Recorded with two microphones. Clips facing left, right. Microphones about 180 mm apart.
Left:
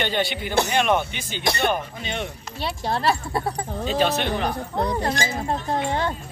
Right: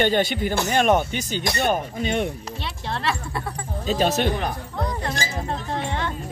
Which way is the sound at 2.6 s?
40° left (ahead or behind).